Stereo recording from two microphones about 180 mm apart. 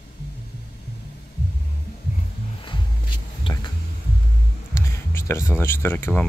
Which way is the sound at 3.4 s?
25° left (ahead or behind).